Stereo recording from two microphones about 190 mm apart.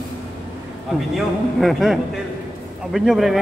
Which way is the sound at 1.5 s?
Centre (ahead or behind).